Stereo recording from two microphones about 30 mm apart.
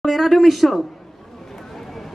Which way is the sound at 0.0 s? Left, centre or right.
Centre.